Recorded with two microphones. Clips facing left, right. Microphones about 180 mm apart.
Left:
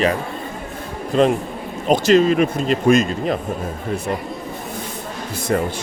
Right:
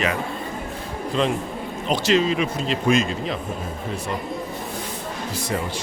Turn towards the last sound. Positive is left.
turn(degrees=50)  # may be behind; listen again after turning